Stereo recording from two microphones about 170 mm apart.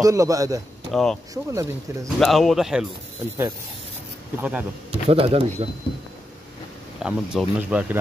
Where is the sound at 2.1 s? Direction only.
Centre (ahead or behind).